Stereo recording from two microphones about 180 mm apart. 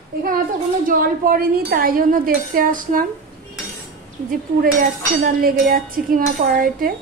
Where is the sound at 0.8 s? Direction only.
50° right (ahead or behind).